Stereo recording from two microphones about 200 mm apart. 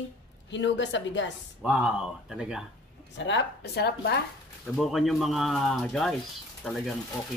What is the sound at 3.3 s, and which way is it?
Speech, 60° left (ahead or behind).